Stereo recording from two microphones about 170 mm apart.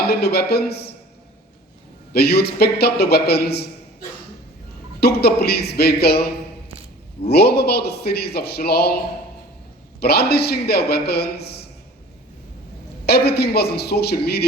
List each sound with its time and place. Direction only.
0.1 s a man's voice: 70° left (ahead or behind)
2.1 s a man's voice: 70° left (ahead or behind)
4.9 s a man's voice: 70° left (ahead or behind)
7.3 s a man's voice: 70° left (ahead or behind)
10.0 s a man's voice: 70° left (ahead or behind)
13.1 s a man's voice: 70° left (ahead or behind)